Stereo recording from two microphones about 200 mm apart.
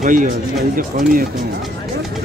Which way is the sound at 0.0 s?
40° right (ahead or behind).